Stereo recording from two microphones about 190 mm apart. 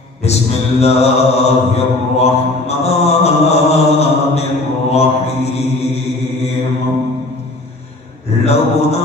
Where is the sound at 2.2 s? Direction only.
35° left (ahead or behind).